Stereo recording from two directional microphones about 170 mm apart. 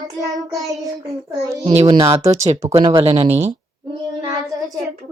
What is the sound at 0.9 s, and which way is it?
Child singing, 20° right (ahead or behind).